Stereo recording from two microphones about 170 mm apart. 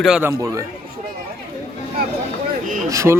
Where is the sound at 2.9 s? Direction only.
20° right (ahead or behind).